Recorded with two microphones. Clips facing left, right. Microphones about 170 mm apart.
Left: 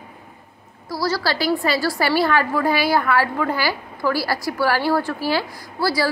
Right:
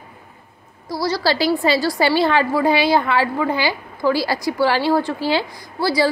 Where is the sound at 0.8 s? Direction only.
20° right (ahead or behind).